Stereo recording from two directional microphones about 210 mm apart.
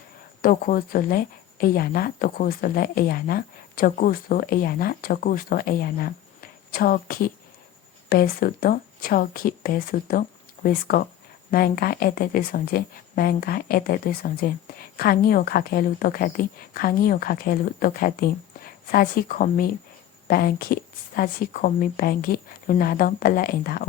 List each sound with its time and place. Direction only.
0.4 s a woman's voice: 45° left (ahead or behind)